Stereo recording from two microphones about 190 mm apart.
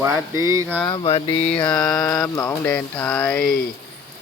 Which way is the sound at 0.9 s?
25° left (ahead or behind).